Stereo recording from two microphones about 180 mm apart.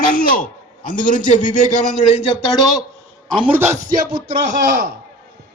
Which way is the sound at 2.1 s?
30° left (ahead or behind).